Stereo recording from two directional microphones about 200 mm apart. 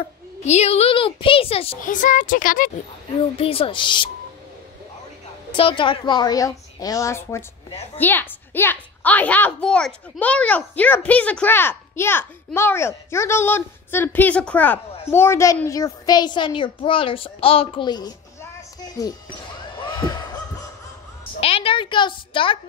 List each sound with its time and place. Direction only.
0.4 s a woman's voice: 35° left (ahead or behind)
1.8 s speech: 40° left (ahead or behind)
3.3 s a woman's voice: 30° left (ahead or behind)
5.5 s a woman's voice: 25° left (ahead or behind)
19.8 s heart sounds: 20° left (ahead or behind)
21.4 s a woman's voice: 30° left (ahead or behind)